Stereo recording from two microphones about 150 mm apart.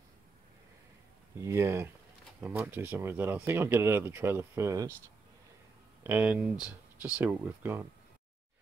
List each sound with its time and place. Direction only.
1.4 s speech: 20° right (ahead or behind)
6.0 s speech: 10° right (ahead or behind)